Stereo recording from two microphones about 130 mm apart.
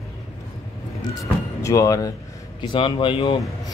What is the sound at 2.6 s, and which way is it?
Speech, 40° left (ahead or behind).